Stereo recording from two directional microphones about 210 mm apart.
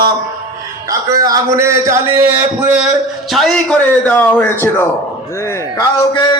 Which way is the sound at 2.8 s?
Centre (ahead or behind).